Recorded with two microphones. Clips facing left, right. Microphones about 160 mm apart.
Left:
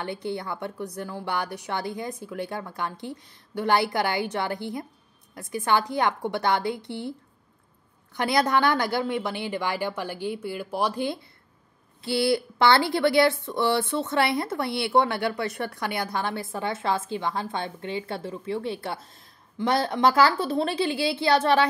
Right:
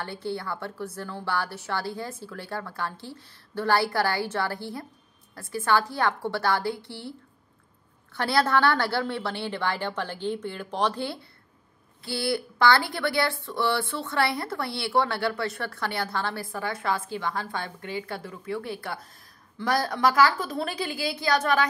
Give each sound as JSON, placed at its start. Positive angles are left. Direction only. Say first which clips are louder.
{"t": 0.0, "sound": "a woman's voice", "louder": "left 2 dB", "side_deg": 15}
{"t": 8.2, "sound": "a woman's voice", "louder": "left 1 dB", "side_deg": 15}